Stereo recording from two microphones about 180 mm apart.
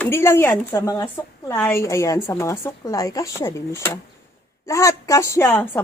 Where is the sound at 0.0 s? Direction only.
15° left (ahead or behind).